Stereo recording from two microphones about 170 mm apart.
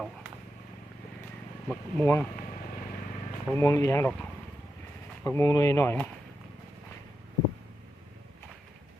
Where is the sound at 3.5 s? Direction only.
15° left (ahead or behind).